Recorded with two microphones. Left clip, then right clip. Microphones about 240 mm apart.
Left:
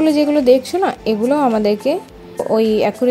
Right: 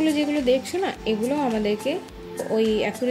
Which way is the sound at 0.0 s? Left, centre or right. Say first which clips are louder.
Left 9 dB; left.